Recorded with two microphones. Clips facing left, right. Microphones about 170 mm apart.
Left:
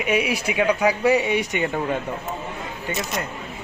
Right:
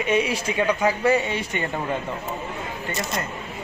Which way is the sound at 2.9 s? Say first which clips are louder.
Left 2 dB; centre (ahead or behind).